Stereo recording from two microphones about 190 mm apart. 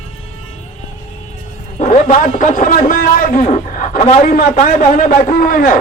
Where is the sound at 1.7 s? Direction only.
40° left (ahead or behind).